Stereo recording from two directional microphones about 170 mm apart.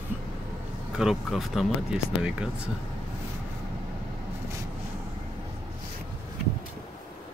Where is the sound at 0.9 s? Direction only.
5° right (ahead or behind).